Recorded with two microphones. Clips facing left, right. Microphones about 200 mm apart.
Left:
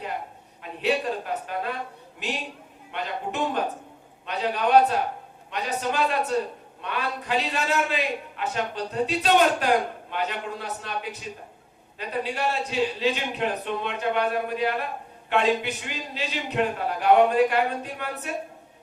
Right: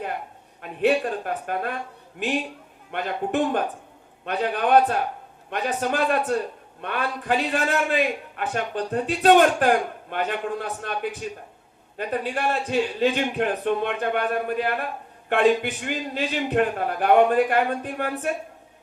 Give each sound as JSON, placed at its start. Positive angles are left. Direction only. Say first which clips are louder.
{"t": 0.6, "sound": "a man's voice", "louder": "right 4 dB", "side_deg": -55}